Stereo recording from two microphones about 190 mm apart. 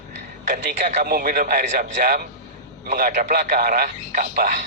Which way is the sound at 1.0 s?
50° right (ahead or behind).